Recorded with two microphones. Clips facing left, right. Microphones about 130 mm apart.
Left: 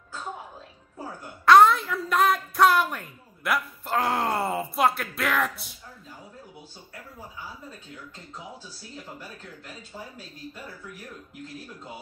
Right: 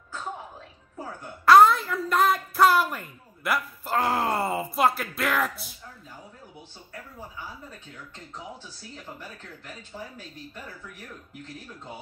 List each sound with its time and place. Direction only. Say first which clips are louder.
1.4 s a woman's voice: even; centre (ahead or behind)